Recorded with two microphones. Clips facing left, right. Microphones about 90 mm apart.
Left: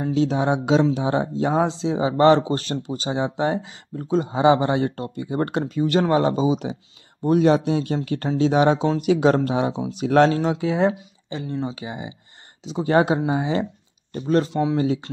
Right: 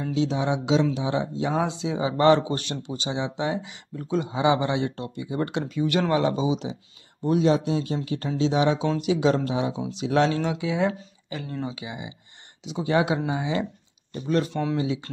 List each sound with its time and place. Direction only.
0.0 s a man's voice: 45° left (ahead or behind)
10.9 s speech: 25° left (ahead or behind)
14.5 s speech: 15° left (ahead or behind)